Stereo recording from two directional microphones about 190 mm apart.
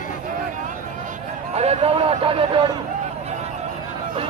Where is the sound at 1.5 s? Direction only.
35° right (ahead or behind).